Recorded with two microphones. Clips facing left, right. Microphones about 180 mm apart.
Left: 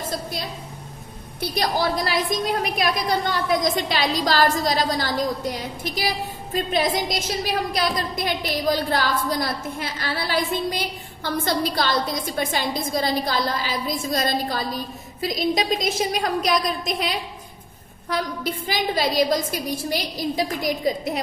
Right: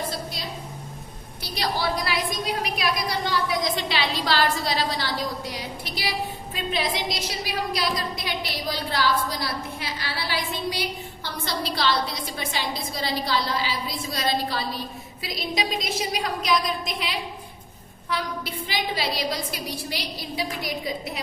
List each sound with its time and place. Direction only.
1.4 s a woman's voice: 45° left (ahead or behind)